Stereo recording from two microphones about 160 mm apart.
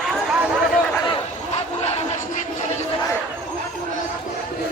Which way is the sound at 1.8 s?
45° left (ahead or behind).